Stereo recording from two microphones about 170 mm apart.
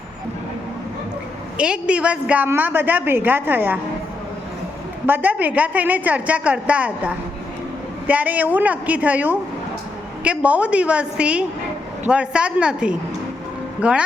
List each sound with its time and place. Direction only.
1.5 s a woman's voice: 5° right (ahead or behind)
5.0 s a woman's voice: 10° right (ahead or behind)